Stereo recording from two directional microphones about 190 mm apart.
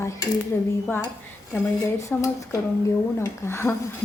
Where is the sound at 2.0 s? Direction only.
15° left (ahead or behind).